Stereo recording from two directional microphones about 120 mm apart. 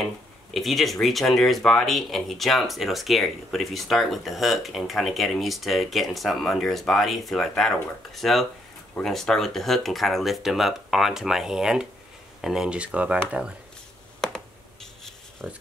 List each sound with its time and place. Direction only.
0.0 s speech: centre (ahead or behind)
14.2 s a sound: 5° left (ahead or behind)
15.4 s speech: 5° right (ahead or behind)